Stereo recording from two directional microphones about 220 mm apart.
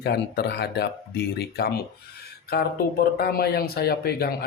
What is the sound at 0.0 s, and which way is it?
Speech, 50° left (ahead or behind).